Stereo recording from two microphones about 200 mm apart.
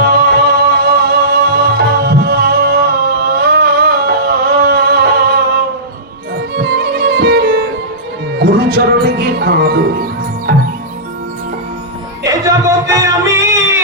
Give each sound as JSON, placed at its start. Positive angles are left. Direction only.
{"t": 0.0, "sound": "music", "side_deg": -50}
{"t": 12.2, "sound": "a sound", "side_deg": -15}
{"t": 13.3, "sound": "music", "side_deg": -65}